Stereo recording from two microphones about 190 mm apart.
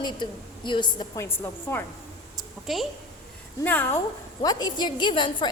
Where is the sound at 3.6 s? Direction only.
10° left (ahead or behind).